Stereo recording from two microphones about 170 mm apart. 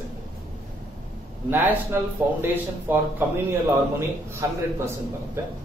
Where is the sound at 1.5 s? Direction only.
10° right (ahead or behind).